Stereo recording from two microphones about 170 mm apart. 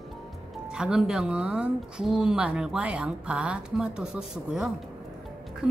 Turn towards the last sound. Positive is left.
turn(degrees=-5)  # may be behind; listen again after turning